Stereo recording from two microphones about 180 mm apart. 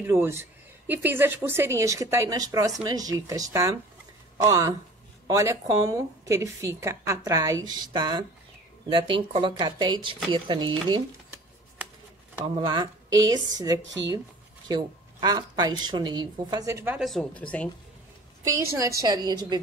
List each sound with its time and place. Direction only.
0.0 s a woman's voice: 15° right (ahead or behind)
12.5 s a woman's voice: 25° right (ahead or behind)
17.0 s speech: 5° left (ahead or behind)
18.4 s a woman's voice: 15° right (ahead or behind)